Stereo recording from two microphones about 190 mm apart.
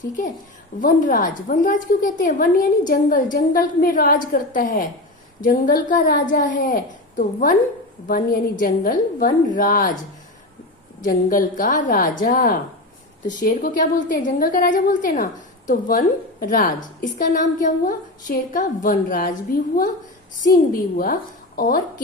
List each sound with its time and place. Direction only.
0.8 s a woman's voice: 45° left (ahead or behind)
11.0 s a woman's voice: 45° left (ahead or behind)
21.0 s a woman's voice: 45° left (ahead or behind)